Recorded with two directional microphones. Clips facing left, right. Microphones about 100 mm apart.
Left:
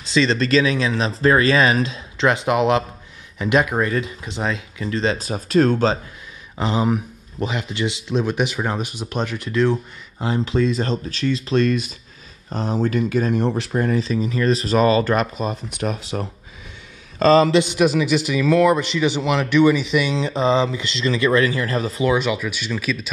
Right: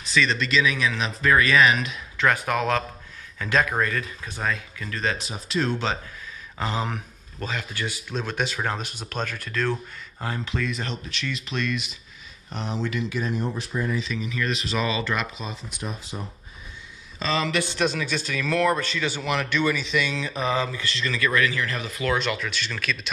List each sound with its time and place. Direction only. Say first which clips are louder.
0.1 s speech: left 6 dB; 30° left (ahead or behind)
5.2 s speech: left 10 dB; 45° left (ahead or behind)
6.6 s speech: left 8 dB; 15° left (ahead or behind); by 13.4 s 50° left (ahead or behind)
13.4 s speech: left 7 dB; 70° left (ahead or behind)
14.0 s speech: left 9 dB; 35° left (ahead or behind)
15.8 s speech: left 10 dB; 75° left (ahead or behind)
17.2 s speech: left 13 dB; 40° left (ahead or behind)
17.5 s speech: left 8 dB; 20° left (ahead or behind)
20.2 s speech: left 7 dB; 25° left (ahead or behind)
22.0 s speech: left 5 dB; 10° left (ahead or behind)